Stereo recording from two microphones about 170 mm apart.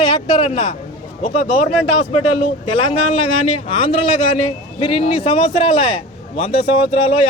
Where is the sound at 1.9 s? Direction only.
35° left (ahead or behind).